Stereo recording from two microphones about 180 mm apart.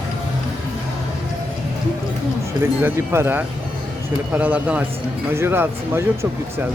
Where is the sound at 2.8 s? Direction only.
15° right (ahead or behind).